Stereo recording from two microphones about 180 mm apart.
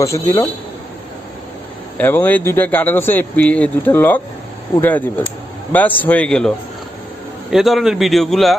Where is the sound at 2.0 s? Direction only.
10° left (ahead or behind).